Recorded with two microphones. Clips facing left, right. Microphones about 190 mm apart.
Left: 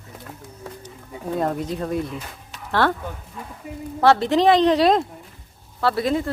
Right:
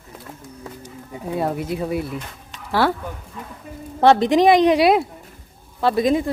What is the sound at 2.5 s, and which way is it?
Music, centre (ahead or behind).